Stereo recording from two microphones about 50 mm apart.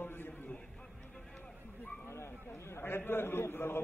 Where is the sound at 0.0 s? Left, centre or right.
Left.